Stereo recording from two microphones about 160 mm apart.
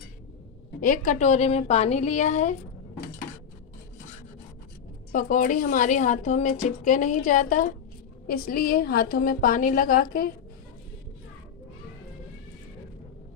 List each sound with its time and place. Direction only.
0.7 s a woman's voice: 60° left (ahead or behind)
5.1 s a woman's voice: 55° left (ahead or behind)
8.3 s a woman's voice: 70° left (ahead or behind)